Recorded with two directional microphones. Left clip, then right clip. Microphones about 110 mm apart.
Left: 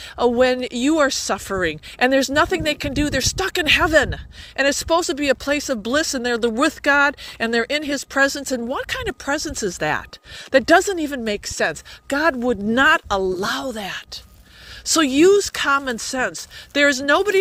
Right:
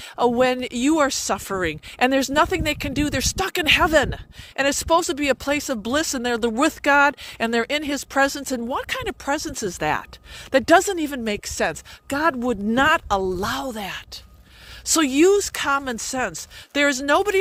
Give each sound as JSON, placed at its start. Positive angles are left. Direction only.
{"t": 0.2, "sound": "speech", "side_deg": -60}
{"t": 10.5, "sound": "speech", "side_deg": -60}
{"t": 12.1, "sound": "speech", "side_deg": -30}